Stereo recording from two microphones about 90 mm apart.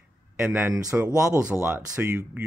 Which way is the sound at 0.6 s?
35° right (ahead or behind).